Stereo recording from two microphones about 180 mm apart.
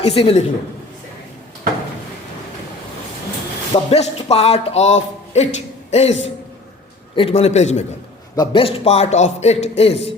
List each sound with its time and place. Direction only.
0.0 s a man's voice: 30° left (ahead or behind)
3.7 s a man's voice: 35° left (ahead or behind)
7.2 s a man's voice: 35° left (ahead or behind)